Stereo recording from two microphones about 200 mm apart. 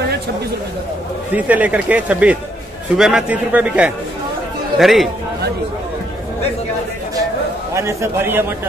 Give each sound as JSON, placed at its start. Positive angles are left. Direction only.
{"t": 1.3, "sound": "a man's voice", "side_deg": -5}
{"t": 7.7, "sound": "speech", "side_deg": -15}